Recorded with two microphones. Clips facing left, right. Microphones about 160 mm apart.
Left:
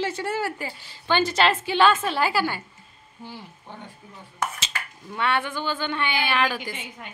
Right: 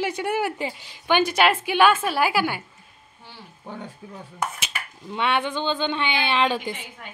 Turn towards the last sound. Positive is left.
turn(degrees=-25)  # may be behind; listen again after turning